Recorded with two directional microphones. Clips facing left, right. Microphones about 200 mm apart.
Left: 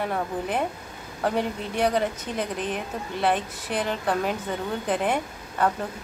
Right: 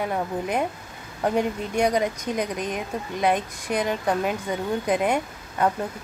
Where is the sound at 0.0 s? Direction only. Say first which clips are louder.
Right 1 dB; 10° right (ahead or behind).